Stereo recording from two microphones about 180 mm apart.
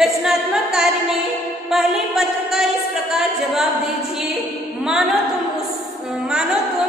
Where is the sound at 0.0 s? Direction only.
5° right (ahead or behind).